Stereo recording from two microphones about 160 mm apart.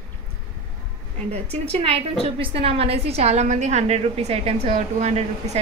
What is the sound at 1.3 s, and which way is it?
A woman's voice, 40° right (ahead or behind).